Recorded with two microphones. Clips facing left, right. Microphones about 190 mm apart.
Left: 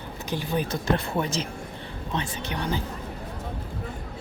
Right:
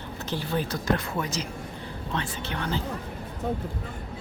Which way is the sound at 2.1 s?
15° left (ahead or behind).